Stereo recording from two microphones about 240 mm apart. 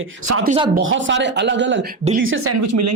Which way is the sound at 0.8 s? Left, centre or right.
Right.